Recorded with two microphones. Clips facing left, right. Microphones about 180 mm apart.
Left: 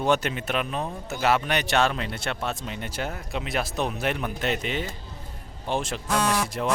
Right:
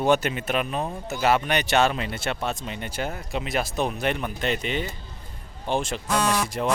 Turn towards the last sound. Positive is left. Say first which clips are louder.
# right 1 dB
turn(degrees=0)  # may be behind; listen again after turning